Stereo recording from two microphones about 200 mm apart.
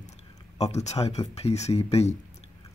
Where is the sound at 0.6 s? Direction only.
35° left (ahead or behind).